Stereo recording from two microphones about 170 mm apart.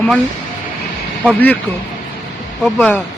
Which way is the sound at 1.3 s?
10° left (ahead or behind).